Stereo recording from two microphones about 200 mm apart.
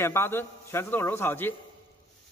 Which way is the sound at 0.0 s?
10° left (ahead or behind).